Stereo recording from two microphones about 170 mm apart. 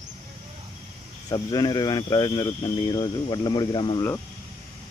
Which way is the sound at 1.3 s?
25° left (ahead or behind).